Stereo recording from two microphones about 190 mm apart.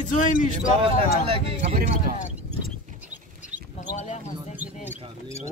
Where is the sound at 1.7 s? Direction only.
45° right (ahead or behind).